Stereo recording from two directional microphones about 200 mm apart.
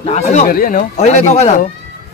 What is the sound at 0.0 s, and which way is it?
Speech, 35° left (ahead or behind).